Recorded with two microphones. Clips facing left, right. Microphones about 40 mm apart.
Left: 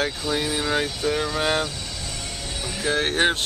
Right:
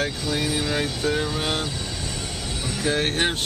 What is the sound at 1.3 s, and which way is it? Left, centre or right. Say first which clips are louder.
Speech: left 3 dB; left.